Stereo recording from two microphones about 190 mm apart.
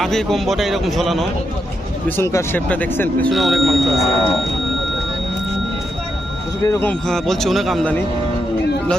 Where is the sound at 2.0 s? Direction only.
15° left (ahead or behind).